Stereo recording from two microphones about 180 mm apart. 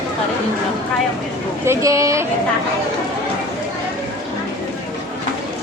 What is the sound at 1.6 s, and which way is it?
Speech, 15° right (ahead or behind).